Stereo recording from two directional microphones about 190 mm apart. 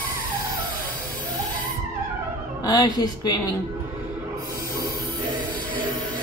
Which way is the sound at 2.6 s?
20° left (ahead or behind).